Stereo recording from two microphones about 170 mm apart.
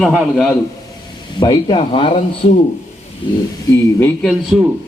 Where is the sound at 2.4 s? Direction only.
45° left (ahead or behind).